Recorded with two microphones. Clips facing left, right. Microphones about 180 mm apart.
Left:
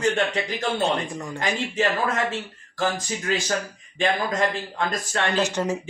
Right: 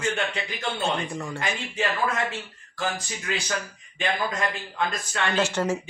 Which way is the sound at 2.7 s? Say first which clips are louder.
Left 4 dB; 40° left (ahead or behind).